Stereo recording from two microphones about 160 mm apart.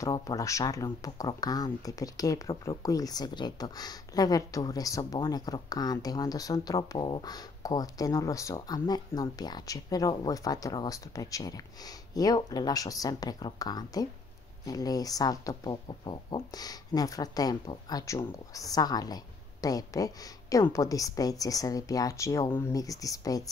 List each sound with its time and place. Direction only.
0.0 s speech: 20° left (ahead or behind)